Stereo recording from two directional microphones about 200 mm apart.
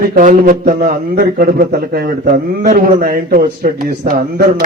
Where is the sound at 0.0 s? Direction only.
45° right (ahead or behind).